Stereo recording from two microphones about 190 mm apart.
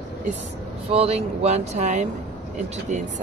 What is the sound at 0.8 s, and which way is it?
Speech, 30° right (ahead or behind).